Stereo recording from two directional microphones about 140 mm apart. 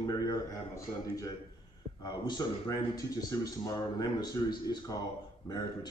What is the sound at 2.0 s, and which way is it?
A man's voice, 30° left (ahead or behind).